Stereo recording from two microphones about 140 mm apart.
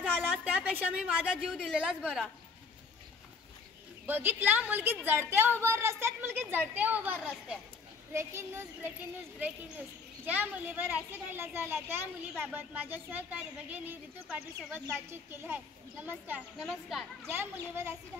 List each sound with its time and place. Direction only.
0.5 s speech: 10° right (ahead or behind)
4.0 s speech: 15° right (ahead or behind)
17.3 s speech: 15° right (ahead or behind)